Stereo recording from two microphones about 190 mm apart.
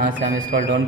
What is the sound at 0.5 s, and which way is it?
Speech, 70° right (ahead or behind).